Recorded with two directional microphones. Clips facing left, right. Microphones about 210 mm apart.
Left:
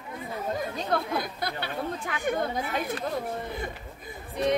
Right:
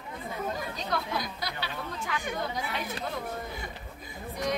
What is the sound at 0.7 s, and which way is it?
Speech, 55° left (ahead or behind).